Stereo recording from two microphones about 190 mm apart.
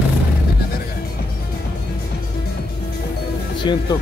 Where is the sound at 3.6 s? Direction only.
25° left (ahead or behind).